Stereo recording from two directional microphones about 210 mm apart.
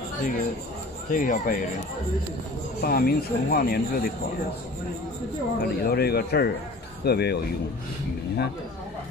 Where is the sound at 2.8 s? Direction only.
45° left (ahead or behind).